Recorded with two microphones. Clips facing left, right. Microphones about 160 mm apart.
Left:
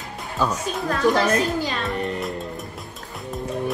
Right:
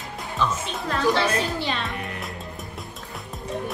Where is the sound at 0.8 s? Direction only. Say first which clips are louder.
Left 3 dB; 30° right (ahead or behind).